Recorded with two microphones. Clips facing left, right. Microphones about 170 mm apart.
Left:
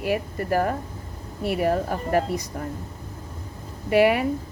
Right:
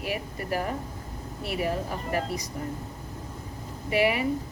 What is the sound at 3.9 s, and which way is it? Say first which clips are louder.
Speech: left 6 dB; 55° left (ahead or behind).